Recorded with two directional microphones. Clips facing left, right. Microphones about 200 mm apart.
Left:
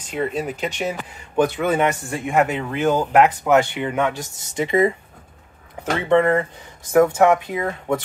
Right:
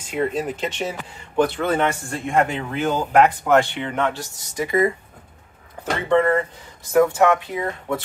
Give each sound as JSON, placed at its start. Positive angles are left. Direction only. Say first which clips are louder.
{"t": 0.0, "sound": "a man's voice", "louder": "right 1 dB", "side_deg": 0}
{"t": 6.0, "sound": "a man's voice", "louder": "left 1 dB", "side_deg": 20}